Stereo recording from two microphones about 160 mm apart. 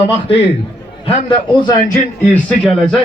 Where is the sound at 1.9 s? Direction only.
10° left (ahead or behind).